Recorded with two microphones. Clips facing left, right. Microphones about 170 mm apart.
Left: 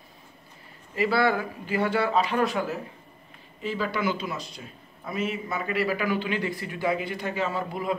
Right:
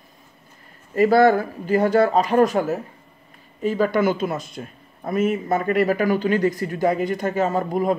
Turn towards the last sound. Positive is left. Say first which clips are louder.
# right 8 dB
turn(degrees=-45)  # may be behind; listen again after turning